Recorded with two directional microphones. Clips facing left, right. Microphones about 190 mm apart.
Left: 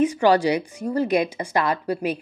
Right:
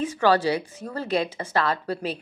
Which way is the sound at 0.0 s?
15° left (ahead or behind).